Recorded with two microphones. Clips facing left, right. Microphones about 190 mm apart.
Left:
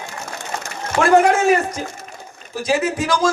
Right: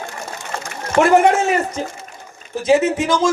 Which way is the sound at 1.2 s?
25° right (ahead or behind).